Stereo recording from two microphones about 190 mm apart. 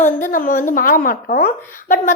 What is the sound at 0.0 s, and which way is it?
A woman's voice, 45° left (ahead or behind).